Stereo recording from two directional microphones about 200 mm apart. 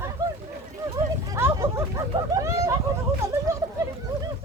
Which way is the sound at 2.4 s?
15° right (ahead or behind).